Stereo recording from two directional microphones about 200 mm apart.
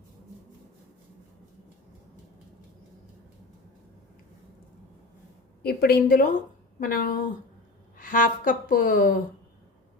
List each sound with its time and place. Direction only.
5.6 s a woman's voice: 50° left (ahead or behind)